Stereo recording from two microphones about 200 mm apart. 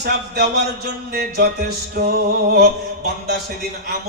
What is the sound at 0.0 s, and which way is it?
Speech, 55° right (ahead or behind).